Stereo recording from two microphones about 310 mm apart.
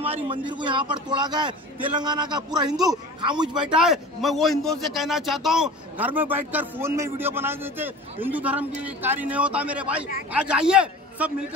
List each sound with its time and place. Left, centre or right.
0.0 s a man's voice: centre
3.4 s a man's voice: centre